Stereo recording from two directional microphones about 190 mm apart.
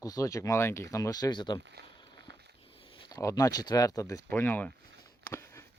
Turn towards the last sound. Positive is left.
turn(degrees=10)  # may be behind; listen again after turning